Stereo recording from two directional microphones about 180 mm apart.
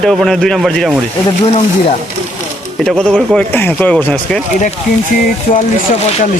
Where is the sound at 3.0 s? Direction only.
5° left (ahead or behind).